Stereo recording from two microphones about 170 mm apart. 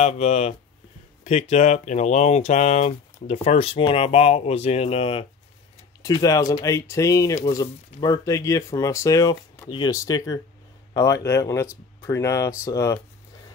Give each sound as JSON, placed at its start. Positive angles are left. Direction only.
{"t": 0.0, "sound": "speech", "side_deg": 40}